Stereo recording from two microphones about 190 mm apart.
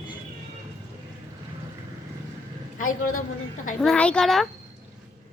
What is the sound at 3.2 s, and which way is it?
Speech, 45° left (ahead or behind).